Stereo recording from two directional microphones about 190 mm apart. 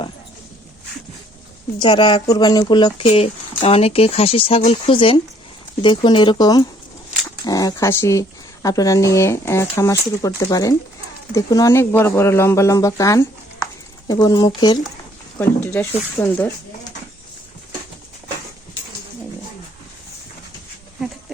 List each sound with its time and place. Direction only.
1.8 s speech: 25° left (ahead or behind)
15.4 s speech: 10° left (ahead or behind)